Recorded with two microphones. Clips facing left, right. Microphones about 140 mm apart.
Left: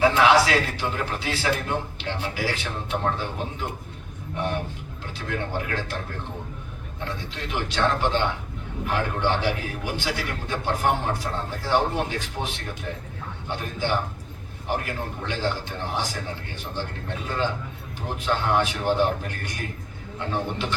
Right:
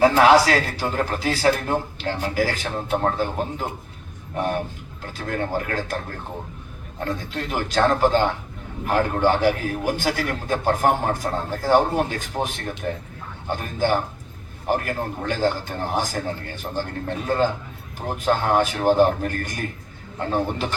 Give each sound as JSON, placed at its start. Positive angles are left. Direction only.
{"t": 0.0, "sound": "a man's voice", "side_deg": -40}
{"t": 7.0, "sound": "a man's voice", "side_deg": -45}
{"t": 17.2, "sound": "a man's voice", "side_deg": -45}